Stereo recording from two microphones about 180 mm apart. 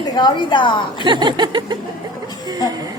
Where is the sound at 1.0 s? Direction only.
25° right (ahead or behind).